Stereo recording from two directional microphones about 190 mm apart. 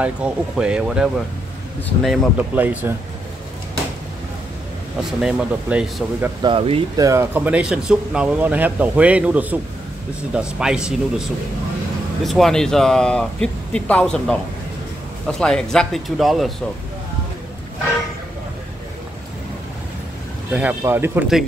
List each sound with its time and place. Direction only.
0.0 s speech: 5° right (ahead or behind)
2.3 s speech: 10° right (ahead or behind)
5.2 s speech: 5° right (ahead or behind)
6.4 s speech: 30° right (ahead or behind)
7.0 s speech: 15° right (ahead or behind); by 16.5 s centre (ahead or behind)
20.5 s speech: 10° right (ahead or behind)